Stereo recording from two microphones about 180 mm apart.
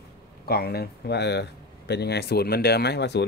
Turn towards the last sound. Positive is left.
turn(degrees=70)  # may be behind; listen again after turning